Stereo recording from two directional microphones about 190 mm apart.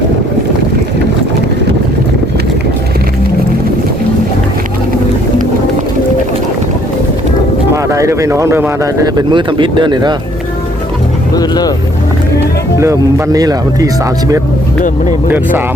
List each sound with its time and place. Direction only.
7.9 s speech: 15° right (ahead or behind)
11.3 s speech: 20° left (ahead or behind)
12.8 s speech: 15° right (ahead or behind)